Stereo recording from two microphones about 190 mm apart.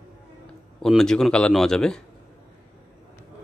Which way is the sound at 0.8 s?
5° left (ahead or behind).